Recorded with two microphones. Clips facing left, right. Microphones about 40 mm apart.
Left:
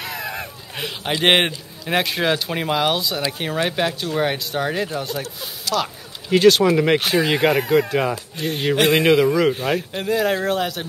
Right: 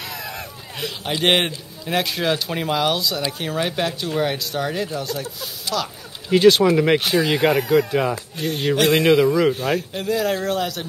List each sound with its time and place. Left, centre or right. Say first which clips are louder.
0.0 s a man's voice: left 3 dB; centre
6.2 s a man's voice: even; centre